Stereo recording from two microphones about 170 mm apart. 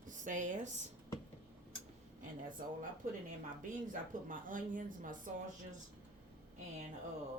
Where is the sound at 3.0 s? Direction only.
50° right (ahead or behind).